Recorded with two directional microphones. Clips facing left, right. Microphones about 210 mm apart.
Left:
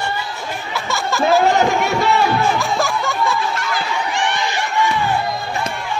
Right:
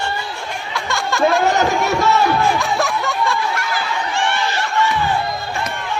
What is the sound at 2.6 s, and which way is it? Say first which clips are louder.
Snicker: even; centre (ahead or behind).